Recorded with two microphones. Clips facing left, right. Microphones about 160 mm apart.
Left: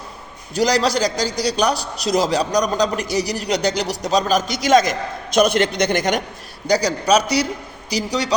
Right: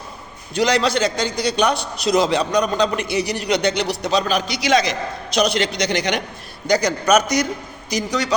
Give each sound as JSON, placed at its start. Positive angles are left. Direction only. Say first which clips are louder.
{"t": 0.5, "sound": "a man's voice", "louder": "even", "side_deg": 35}
{"t": 6.7, "sound": "a man's voice", "louder": "even", "side_deg": 35}